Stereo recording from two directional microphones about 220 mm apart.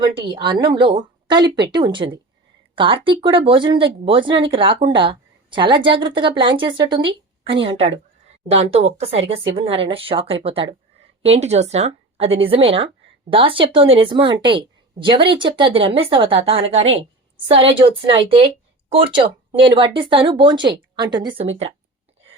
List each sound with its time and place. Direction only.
0.0 s a woman's voice: 20° right (ahead or behind)